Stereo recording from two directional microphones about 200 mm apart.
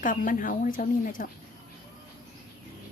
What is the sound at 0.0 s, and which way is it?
A woman's voice, 40° left (ahead or behind).